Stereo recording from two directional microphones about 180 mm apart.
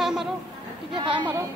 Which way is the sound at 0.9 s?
25° right (ahead or behind).